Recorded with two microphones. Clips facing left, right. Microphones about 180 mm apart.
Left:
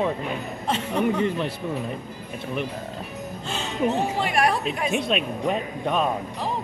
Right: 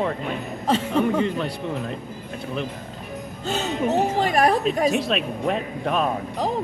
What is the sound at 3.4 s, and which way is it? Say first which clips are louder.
Speech: right 2 dB; 40° right (ahead or behind).